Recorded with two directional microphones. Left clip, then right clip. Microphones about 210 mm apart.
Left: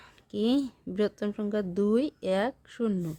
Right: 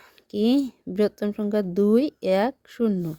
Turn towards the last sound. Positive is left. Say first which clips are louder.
# right 6 dB
turn(degrees=-20)  # may be behind; listen again after turning